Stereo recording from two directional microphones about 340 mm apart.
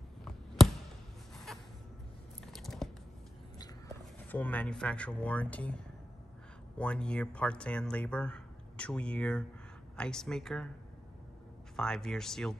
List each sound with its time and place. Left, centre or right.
1.3 s a sound: centre
4.0 s speech: centre
6.8 s speech: centre
11.7 s speech: centre